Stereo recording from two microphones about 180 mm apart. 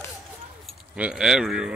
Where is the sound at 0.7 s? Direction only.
5° right (ahead or behind).